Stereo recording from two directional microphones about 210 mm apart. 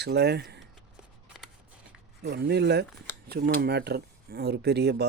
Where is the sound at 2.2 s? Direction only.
55° right (ahead or behind).